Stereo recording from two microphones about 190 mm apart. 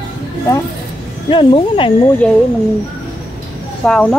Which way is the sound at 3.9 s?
5° left (ahead or behind).